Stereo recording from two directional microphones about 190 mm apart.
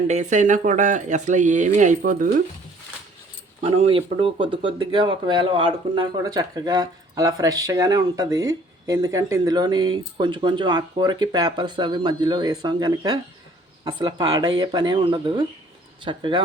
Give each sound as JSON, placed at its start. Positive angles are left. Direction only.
{"t": 0.1, "sound": "speech", "side_deg": -40}
{"t": 3.6, "sound": "speech", "side_deg": -30}